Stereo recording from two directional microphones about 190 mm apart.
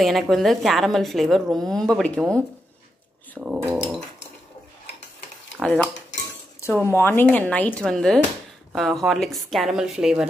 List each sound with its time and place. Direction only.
0.0 s a woman's voice: centre (ahead or behind)
5.6 s a woman's voice: centre (ahead or behind)
6.8 s a woman's voice: 15° left (ahead or behind); by 10.2 s 5° right (ahead or behind)